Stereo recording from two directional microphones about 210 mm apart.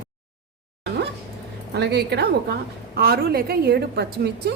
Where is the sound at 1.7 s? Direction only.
55° right (ahead or behind).